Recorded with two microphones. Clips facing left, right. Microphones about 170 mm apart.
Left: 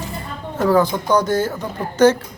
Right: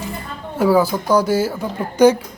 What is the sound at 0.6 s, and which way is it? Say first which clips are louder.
Speech: right 1 dB; 10° right (ahead or behind).